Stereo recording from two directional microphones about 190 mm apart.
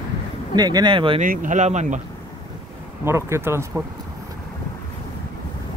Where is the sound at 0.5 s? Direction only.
20° right (ahead or behind).